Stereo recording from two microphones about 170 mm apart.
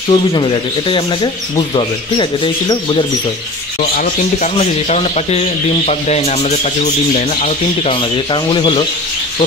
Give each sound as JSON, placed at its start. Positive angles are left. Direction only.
{"t": 0.1, "sound": "speech", "side_deg": 25}
{"t": 4.0, "sound": "speech", "side_deg": 45}
{"t": 7.4, "sound": "speech", "side_deg": 35}